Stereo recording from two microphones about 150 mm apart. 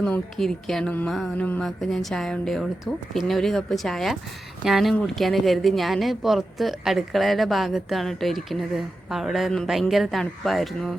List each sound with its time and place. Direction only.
0.0 s speech: 5° left (ahead or behind)